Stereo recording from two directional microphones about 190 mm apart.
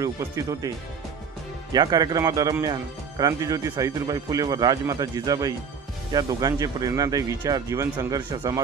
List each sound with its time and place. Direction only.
0.0 s speech: 15° right (ahead or behind)